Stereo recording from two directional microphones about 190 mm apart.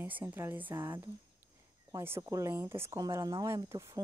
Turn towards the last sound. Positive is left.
turn(degrees=-15)  # may be behind; listen again after turning